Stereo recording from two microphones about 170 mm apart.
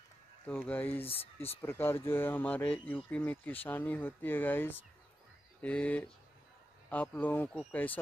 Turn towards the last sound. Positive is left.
turn(degrees=10)  # may be behind; listen again after turning